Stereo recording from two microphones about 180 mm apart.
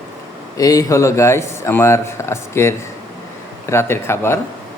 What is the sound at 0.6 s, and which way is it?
Speech, 20° left (ahead or behind).